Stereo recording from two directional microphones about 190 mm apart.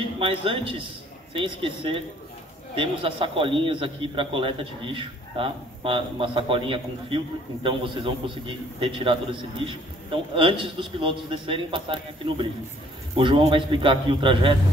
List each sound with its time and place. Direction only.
0.2 s a man's voice: 30° right (ahead or behind)